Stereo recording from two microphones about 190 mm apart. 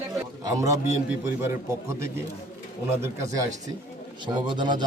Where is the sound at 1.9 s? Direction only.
15° right (ahead or behind).